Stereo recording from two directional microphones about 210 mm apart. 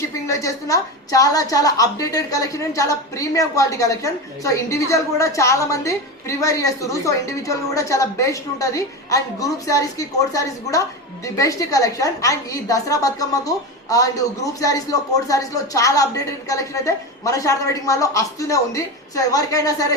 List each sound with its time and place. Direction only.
0.1 s a woman's voice: 15° left (ahead or behind)